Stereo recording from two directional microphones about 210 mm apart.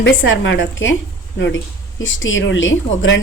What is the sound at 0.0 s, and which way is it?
Speech, 65° left (ahead or behind).